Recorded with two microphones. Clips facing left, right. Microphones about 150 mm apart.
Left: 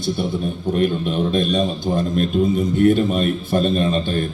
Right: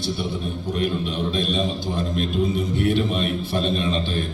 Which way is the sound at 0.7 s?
50° left (ahead or behind).